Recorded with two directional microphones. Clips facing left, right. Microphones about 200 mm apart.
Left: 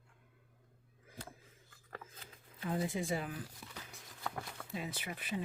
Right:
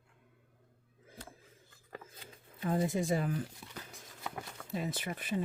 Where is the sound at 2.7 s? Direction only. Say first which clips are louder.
Right 5 dB; 45° right (ahead or behind).